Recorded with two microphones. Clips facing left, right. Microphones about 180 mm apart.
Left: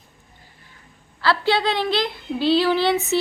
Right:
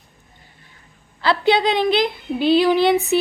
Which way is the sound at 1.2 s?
20° right (ahead or behind).